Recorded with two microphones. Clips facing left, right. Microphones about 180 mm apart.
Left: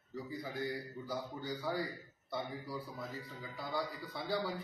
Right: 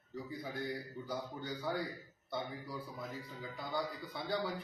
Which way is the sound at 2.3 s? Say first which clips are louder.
Left 1 dB; 5° left (ahead or behind).